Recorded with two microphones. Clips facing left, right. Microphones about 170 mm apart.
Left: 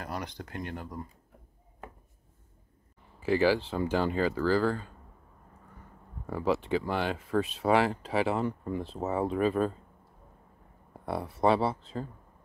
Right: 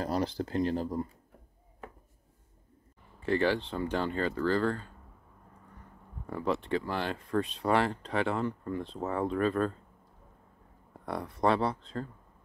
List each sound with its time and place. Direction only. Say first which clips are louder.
0.0 s speech: right 7 dB; 30° right (ahead or behind)
3.2 s speech: left 3 dB; 5° left (ahead or behind)
6.2 s speech: left 3 dB; 5° left (ahead or behind)
10.9 s speech: left 2 dB; 5° left (ahead or behind)